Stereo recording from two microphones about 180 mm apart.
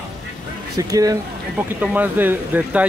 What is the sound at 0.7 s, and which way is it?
Speech, 20° right (ahead or behind).